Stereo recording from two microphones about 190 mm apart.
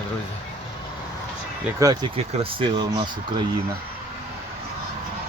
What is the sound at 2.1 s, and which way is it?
Speech, 25° right (ahead or behind).